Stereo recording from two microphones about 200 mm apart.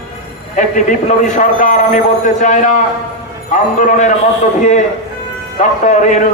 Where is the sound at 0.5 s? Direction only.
35° left (ahead or behind).